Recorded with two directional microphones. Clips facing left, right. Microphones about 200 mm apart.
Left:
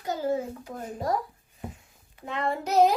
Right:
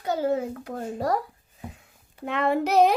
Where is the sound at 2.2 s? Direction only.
65° right (ahead or behind).